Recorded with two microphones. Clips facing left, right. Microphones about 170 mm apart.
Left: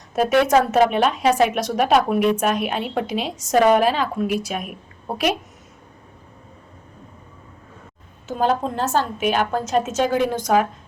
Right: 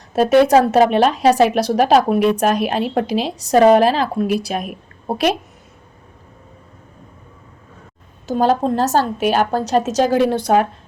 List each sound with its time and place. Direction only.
0.1 s a woman's voice: 35° right (ahead or behind)
8.3 s a woman's voice: 35° right (ahead or behind)